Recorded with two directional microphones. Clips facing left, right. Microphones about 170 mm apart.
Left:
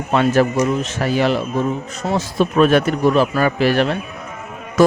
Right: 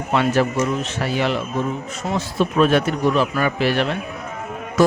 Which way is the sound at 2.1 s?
55° left (ahead or behind).